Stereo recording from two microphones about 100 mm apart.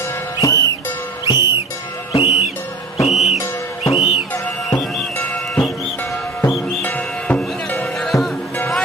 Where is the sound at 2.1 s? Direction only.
85° left.